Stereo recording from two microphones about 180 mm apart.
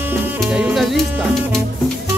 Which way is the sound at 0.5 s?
5° right (ahead or behind).